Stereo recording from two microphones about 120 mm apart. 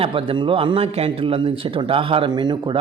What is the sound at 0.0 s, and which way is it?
Speech, 50° right (ahead or behind).